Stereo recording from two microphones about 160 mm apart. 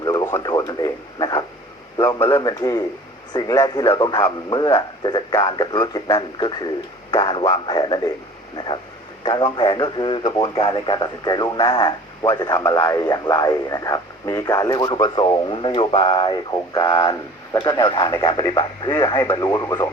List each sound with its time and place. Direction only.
0.0 s radio: 20° left (ahead or behind)
2.0 s a man's voice: 15° left (ahead or behind)
12.2 s speech: 15° left (ahead or behind)